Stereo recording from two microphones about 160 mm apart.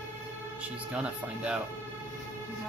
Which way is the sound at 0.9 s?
5° right (ahead or behind).